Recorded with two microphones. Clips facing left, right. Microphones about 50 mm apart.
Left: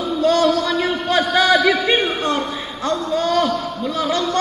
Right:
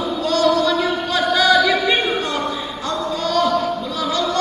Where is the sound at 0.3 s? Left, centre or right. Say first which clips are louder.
Right 1 dB; left.